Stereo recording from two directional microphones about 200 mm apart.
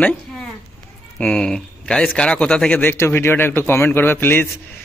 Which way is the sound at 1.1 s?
5° left (ahead or behind).